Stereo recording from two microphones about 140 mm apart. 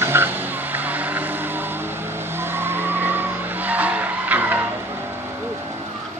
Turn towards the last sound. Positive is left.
turn(degrees=-10)  # may be behind; listen again after turning